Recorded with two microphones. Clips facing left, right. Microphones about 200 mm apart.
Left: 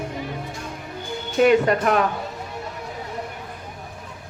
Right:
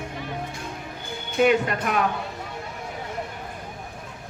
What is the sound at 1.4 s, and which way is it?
Speech, 45° left (ahead or behind).